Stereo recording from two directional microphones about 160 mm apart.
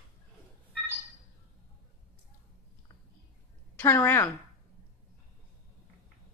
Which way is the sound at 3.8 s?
15° left (ahead or behind).